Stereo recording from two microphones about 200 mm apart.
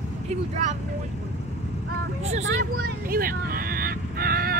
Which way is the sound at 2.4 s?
45° right (ahead or behind).